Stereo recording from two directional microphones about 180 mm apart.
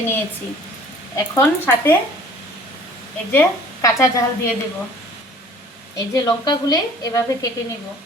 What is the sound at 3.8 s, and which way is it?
Speech, 15° left (ahead or behind).